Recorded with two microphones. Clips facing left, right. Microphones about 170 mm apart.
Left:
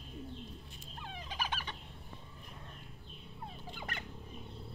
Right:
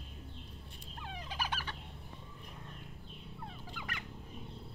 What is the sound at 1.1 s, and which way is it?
Fowl, 10° right (ahead or behind).